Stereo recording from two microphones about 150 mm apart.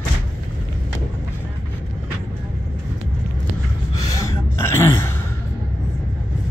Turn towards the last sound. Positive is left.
turn(degrees=15)  # may be behind; listen again after turning